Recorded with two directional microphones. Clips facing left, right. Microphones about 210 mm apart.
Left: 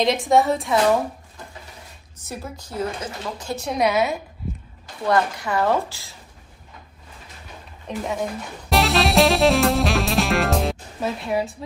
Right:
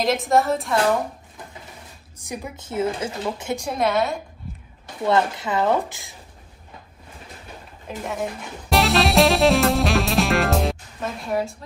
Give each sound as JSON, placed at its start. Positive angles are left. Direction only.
{"t": 0.0, "sound": "a woman's voice", "side_deg": 0}
{"t": 2.1, "sound": "a woman's voice", "side_deg": -15}
{"t": 3.6, "sound": "a woman's voice", "side_deg": 0}
{"t": 5.0, "sound": "a woman's voice", "side_deg": -20}
{"t": 8.0, "sound": "speech", "side_deg": 0}